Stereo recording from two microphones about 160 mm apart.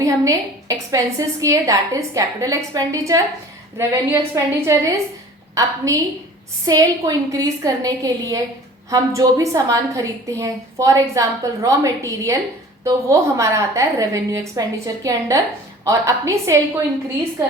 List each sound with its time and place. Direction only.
0.0 s a woman's voice: 20° right (ahead or behind)